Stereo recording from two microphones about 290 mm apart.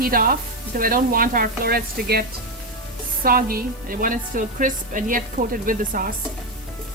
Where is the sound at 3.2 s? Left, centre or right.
Right.